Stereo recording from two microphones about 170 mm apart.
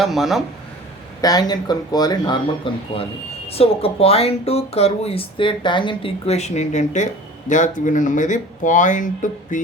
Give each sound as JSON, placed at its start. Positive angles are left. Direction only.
{"t": 0.0, "sound": "speech", "side_deg": 0}
{"t": 1.2, "sound": "speech", "side_deg": 20}